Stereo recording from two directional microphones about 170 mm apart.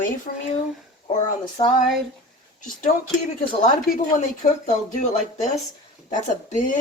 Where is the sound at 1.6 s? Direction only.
25° left (ahead or behind).